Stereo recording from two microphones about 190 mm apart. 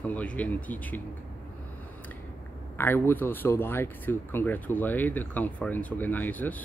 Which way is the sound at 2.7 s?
10° left (ahead or behind).